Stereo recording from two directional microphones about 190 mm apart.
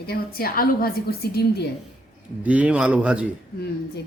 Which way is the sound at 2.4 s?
5° right (ahead or behind).